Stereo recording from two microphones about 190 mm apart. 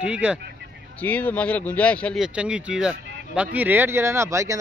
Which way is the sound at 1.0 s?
10° left (ahead or behind).